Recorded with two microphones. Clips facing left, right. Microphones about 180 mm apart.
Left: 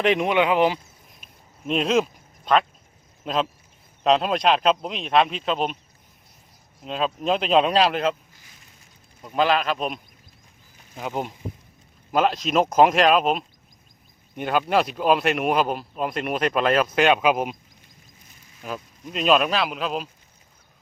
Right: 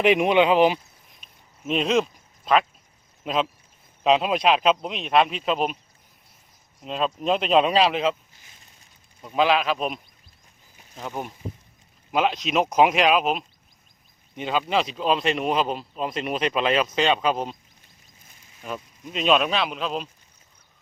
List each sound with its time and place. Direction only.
0.0 s speech: 10° right (ahead or behind)
0.3 s speech: 20° right (ahead or behind)
1.2 s a sound: centre (ahead or behind)
3.2 s speech: centre (ahead or behind)
6.8 s speech: centre (ahead or behind)
9.2 s speech: centre (ahead or behind)
10.9 s speech: 15° left (ahead or behind)
12.1 s speech: centre (ahead or behind)
14.4 s speech: 5° left (ahead or behind)
18.6 s speech: centre (ahead or behind)